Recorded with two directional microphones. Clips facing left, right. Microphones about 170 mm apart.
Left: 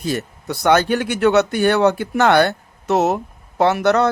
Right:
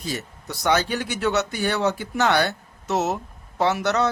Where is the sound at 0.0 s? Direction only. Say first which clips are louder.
Left 7 dB; 60° left (ahead or behind).